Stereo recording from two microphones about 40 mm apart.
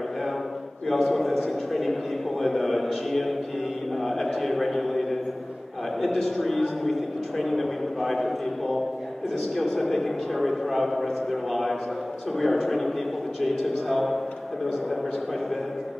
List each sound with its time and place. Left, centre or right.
0.8 s a man's voice: centre